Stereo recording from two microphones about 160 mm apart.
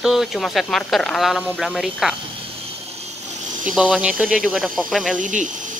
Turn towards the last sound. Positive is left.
turn(degrees=-50)  # may be behind; listen again after turning